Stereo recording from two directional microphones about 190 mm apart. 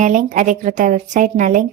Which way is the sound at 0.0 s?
40° right (ahead or behind).